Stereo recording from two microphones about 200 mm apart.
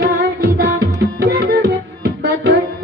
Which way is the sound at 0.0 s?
55° right (ahead or behind).